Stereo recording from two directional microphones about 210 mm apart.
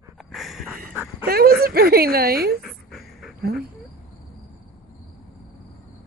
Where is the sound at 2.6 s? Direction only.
Centre (ahead or behind).